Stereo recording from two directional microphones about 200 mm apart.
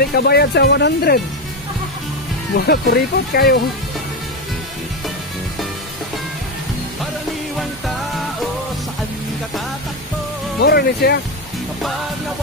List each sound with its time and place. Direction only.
0.1 s speech: 55° left (ahead or behind)
2.5 s speech: 50° left (ahead or behind)
10.6 s speech: 50° left (ahead or behind)